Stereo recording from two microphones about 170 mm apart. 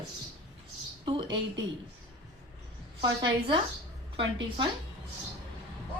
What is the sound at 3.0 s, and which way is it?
A woman's voice, 25° right (ahead or behind).